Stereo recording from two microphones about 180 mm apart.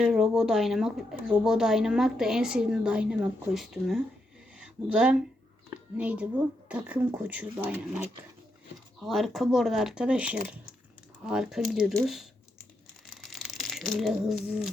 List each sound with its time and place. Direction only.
0.0 s speech: centre (ahead or behind)
4.5 s a sound: 5° right (ahead or behind)
6.0 s speech: 5° right (ahead or behind)
13.2 s crumpling: centre (ahead or behind)